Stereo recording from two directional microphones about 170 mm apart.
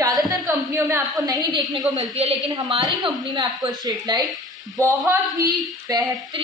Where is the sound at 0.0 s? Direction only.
15° right (ahead or behind).